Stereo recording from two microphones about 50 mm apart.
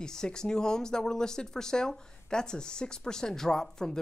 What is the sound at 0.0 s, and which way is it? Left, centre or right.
Speech, centre.